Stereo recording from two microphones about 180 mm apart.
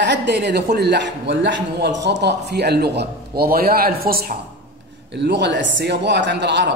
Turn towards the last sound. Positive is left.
turn(degrees=-75)  # may be behind; listen again after turning